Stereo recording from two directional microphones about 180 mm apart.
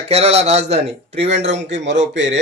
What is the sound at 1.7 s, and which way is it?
Speech, 90° right.